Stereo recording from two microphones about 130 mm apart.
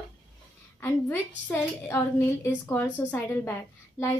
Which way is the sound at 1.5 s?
15° left (ahead or behind).